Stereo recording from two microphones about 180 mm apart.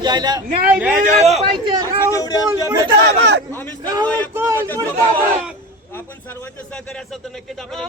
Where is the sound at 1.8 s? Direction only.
20° right (ahead or behind).